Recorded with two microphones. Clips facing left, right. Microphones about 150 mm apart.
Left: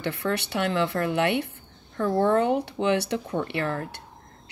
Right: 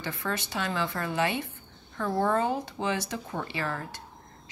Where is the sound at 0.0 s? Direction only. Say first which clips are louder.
Left 6 dB; 65° left (ahead or behind).